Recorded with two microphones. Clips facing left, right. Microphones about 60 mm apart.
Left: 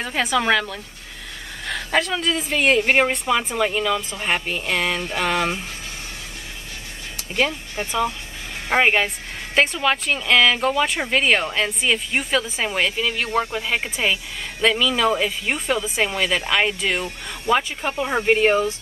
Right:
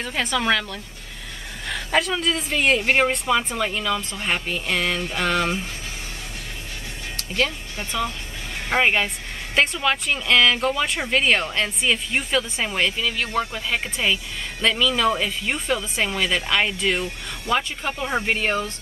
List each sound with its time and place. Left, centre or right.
0.0 s speech: centre
7.2 s speech: centre